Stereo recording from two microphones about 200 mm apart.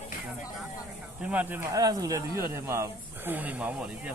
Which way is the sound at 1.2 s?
5° right (ahead or behind).